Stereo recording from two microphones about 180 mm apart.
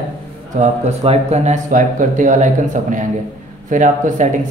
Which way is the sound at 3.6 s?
45° right (ahead or behind).